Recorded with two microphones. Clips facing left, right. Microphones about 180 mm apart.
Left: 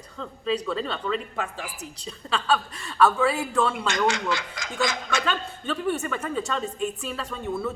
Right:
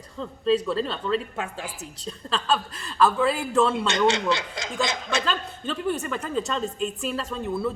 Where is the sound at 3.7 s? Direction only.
25° right (ahead or behind).